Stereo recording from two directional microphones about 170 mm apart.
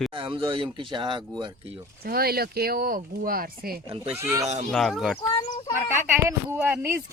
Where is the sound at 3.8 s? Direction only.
35° right (ahead or behind).